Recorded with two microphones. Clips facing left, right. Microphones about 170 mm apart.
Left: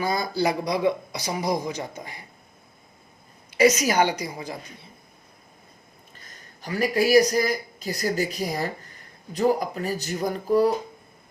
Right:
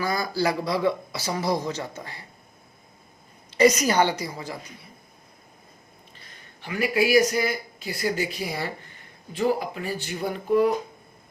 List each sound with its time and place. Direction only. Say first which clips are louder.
0.0 s speech: left 1 dB; 20° left (ahead or behind)
3.5 s speech: even; 5° left (ahead or behind)
6.1 s speech: left 1 dB; 45° left (ahead or behind)